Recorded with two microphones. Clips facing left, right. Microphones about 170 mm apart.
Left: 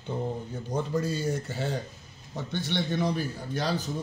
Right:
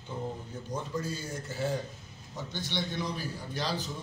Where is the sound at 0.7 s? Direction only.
65° left (ahead or behind).